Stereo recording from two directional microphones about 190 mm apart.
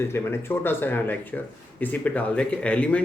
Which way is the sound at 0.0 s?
10° left (ahead or behind).